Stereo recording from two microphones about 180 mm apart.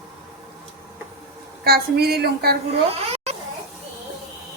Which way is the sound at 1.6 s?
60° right (ahead or behind).